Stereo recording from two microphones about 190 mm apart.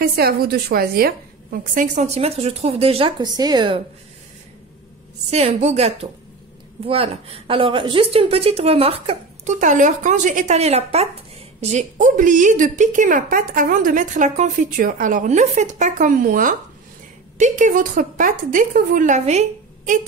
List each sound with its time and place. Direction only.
0.0 s a woman's voice: 55° right (ahead or behind); by 3.8 s 25° right (ahead or behind)
5.3 s a woman's voice: 35° right (ahead or behind)